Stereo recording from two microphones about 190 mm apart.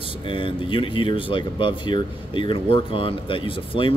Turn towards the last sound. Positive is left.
turn(degrees=30)  # may be behind; listen again after turning